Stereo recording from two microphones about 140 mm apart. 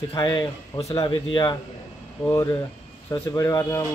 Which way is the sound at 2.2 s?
25° left (ahead or behind).